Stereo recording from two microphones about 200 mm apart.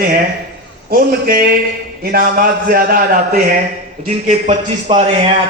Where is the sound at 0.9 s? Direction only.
50° right (ahead or behind).